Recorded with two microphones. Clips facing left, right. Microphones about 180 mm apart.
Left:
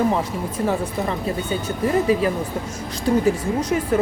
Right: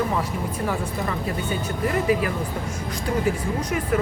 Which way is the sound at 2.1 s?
30° left (ahead or behind).